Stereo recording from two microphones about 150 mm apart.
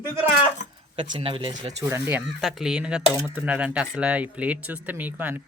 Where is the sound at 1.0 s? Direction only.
35° right (ahead or behind).